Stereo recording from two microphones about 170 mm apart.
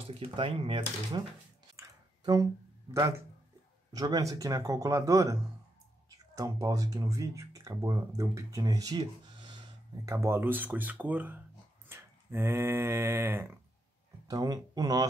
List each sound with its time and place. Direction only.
0.4 s speech: 30° right (ahead or behind)
1.8 s a sound: 20° right (ahead or behind)
2.9 s speech: 15° right (ahead or behind)
10.1 s speech: 15° right (ahead or behind)
11.9 s a sound: 15° right (ahead or behind)
14.2 s speech: 20° right (ahead or behind)